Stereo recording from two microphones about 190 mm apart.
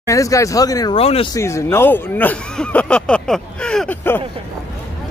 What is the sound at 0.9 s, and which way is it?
Speech, 30° left (ahead or behind).